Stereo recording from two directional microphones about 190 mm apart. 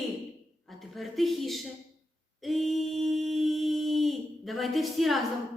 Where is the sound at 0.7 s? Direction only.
Centre (ahead or behind).